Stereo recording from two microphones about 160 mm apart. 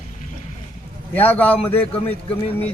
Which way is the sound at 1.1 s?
10° left (ahead or behind).